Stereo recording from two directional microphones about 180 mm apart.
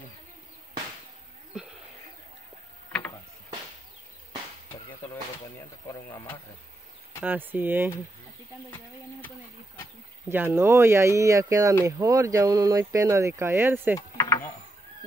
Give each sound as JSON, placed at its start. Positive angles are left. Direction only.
{"t": 5.9, "sound": "speech", "side_deg": 10}
{"t": 7.2, "sound": "speech", "side_deg": -10}
{"t": 10.3, "sound": "speech", "side_deg": -10}
{"t": 13.9, "sound": "mechanisms", "side_deg": 15}